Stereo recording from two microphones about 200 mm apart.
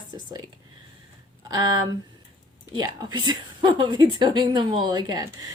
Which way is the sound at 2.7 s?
20° right (ahead or behind).